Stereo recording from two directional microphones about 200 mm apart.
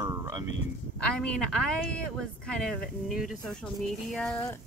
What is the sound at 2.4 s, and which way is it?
Speech, 5° left (ahead or behind).